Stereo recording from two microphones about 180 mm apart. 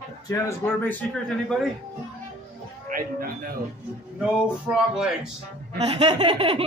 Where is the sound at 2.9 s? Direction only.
55° right (ahead or behind).